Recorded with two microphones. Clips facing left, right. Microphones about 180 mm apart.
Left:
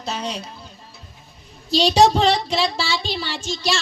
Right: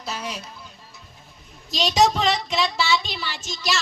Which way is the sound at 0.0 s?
25° left (ahead or behind).